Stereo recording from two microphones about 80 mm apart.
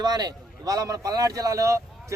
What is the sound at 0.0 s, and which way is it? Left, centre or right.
A man's voice, right.